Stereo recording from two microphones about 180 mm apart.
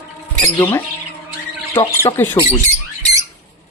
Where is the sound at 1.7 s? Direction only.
15° left (ahead or behind).